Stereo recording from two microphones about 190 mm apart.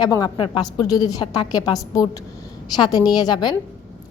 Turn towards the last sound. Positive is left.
turn(degrees=20)  # may be behind; listen again after turning